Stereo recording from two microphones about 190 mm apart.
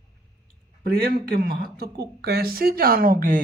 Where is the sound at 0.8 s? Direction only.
50° right (ahead or behind).